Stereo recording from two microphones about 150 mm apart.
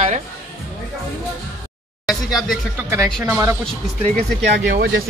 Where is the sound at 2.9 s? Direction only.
15° right (ahead or behind).